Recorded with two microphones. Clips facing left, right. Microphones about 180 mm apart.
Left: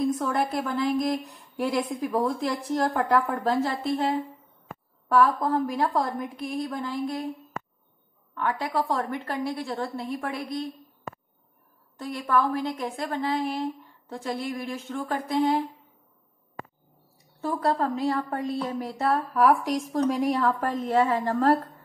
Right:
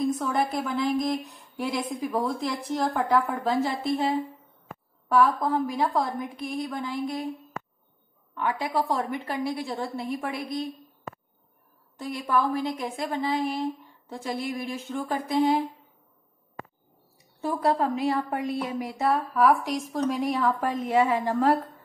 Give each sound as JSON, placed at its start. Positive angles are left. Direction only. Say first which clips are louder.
{"t": 0.2, "sound": "a woman's voice", "louder": "even", "side_deg": 0}
{"t": 5.0, "sound": "a woman's voice", "louder": "even", "side_deg": 0}
{"t": 8.4, "sound": "a woman's voice", "louder": "even", "side_deg": -10}
{"t": 12.0, "sound": "a woman's voice", "louder": "left 1 dB", "side_deg": -10}
{"t": 13.2, "sound": "a woman's voice", "louder": "even", "side_deg": 0}
{"t": 17.6, "sound": "a woman's voice", "louder": "right 1 dB", "side_deg": -15}